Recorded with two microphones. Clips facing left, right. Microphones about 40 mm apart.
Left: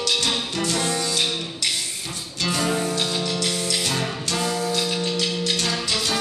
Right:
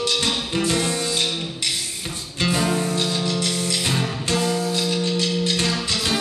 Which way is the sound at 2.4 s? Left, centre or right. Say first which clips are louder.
Right 3 dB; centre.